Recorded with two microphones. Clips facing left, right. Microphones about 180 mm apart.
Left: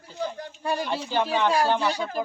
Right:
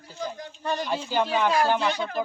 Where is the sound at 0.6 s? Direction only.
10° left (ahead or behind).